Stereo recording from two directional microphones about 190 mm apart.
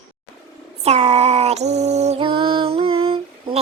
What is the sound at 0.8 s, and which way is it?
Music, 35° right (ahead or behind).